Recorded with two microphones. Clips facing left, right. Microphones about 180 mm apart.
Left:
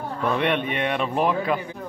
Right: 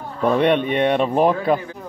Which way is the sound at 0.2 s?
40° right (ahead or behind).